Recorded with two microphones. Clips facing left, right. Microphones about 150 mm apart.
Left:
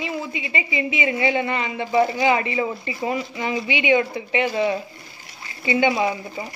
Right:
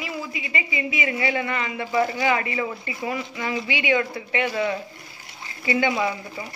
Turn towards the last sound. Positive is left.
turn(degrees=25)  # may be behind; listen again after turning